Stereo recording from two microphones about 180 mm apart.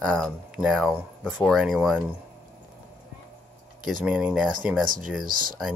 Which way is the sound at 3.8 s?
5° right (ahead or behind).